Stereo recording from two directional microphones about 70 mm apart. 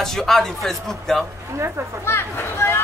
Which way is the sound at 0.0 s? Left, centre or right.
Centre.